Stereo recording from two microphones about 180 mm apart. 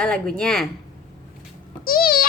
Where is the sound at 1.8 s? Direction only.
55° left (ahead or behind).